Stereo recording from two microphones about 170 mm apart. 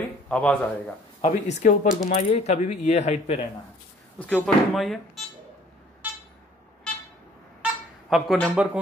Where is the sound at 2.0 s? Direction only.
40° left (ahead or behind).